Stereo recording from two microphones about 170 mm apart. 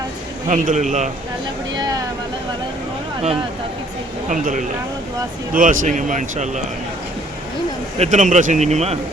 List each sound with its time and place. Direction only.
0.4 s speech: 45° right (ahead or behind)
4.3 s speech: 50° right (ahead or behind)
7.9 s speech: 40° right (ahead or behind)